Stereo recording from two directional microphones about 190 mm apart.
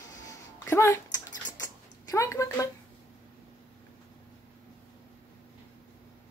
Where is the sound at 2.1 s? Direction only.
15° left (ahead or behind).